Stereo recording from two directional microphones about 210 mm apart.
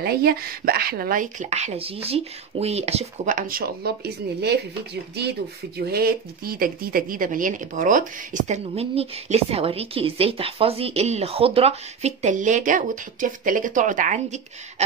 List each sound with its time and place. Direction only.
0.0 s speech: 45° right (ahead or behind)
5.8 s speech: 50° right (ahead or behind)